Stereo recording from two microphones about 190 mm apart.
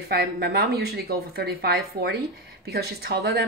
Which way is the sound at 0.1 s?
55° right (ahead or behind).